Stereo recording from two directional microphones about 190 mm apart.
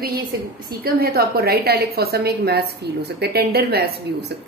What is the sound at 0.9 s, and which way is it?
A woman's voice, 55° right (ahead or behind).